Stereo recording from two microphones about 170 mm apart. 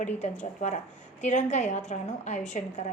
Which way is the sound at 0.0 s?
45° left (ahead or behind).